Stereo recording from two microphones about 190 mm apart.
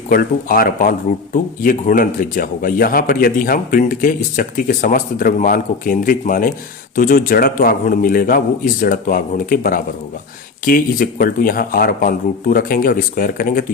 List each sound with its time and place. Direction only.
0.1 s speech: 50° left (ahead or behind)